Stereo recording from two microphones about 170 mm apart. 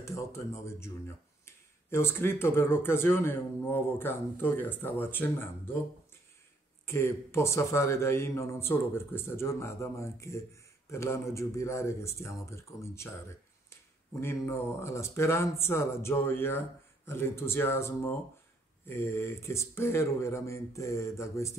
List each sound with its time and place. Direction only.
0.0 s a man's voice: 15° left (ahead or behind)
6.9 s a man's voice: 15° left (ahead or behind)
14.2 s a man's voice: 15° left (ahead or behind)